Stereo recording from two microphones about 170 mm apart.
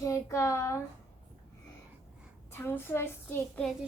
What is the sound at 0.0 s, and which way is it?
Speech, 20° left (ahead or behind).